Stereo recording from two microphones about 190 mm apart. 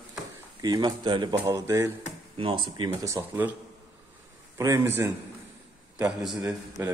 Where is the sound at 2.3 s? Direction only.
25° right (ahead or behind).